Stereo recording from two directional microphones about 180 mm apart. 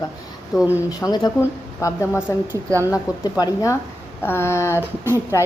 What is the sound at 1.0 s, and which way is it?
Speech, 25° left (ahead or behind).